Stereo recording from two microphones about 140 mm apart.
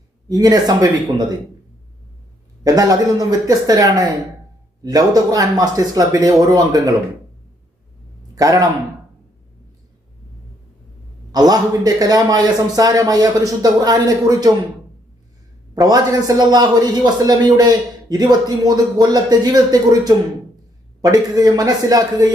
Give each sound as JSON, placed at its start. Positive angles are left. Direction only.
{"t": 0.3, "sound": "a man's voice", "side_deg": -25}
{"t": 2.6, "sound": "a man's voice", "side_deg": -25}
{"t": 8.4, "sound": "a man's voice", "side_deg": -25}
{"t": 11.3, "sound": "a man's voice", "side_deg": -25}
{"t": 15.7, "sound": "a man's voice", "side_deg": -25}